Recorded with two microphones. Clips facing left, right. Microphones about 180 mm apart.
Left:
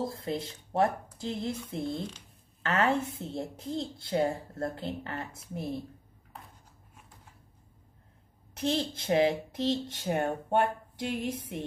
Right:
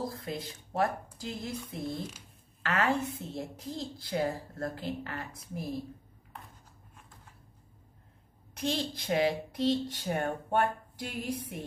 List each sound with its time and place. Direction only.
0.0 s a woman's voice: 25° left (ahead or behind)
8.5 s a woman's voice: 25° left (ahead or behind)